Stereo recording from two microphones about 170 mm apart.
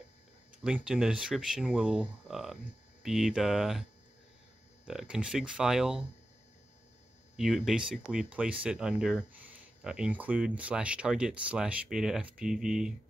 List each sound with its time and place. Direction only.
0.7 s speech: 5° right (ahead or behind)
4.8 s speech: 5° right (ahead or behind)
7.3 s speech: centre (ahead or behind)